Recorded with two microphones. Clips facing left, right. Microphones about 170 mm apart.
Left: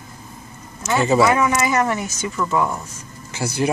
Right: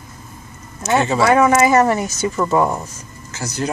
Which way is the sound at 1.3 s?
45° right (ahead or behind).